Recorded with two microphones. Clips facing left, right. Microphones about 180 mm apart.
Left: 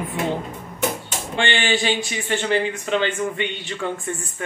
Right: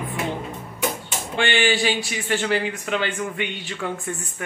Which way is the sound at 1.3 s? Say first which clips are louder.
Right 1 dB; 5° right (ahead or behind).